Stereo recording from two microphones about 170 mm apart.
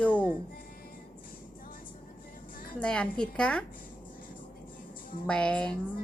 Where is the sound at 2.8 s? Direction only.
5° left (ahead or behind).